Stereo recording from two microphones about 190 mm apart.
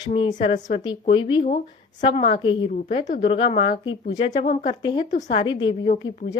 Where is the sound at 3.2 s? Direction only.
25° left (ahead or behind).